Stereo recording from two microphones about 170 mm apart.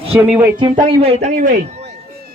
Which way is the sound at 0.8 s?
35° right (ahead or behind).